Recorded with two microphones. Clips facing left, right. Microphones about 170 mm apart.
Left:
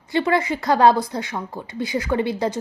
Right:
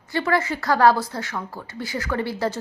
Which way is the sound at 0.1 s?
20° left (ahead or behind).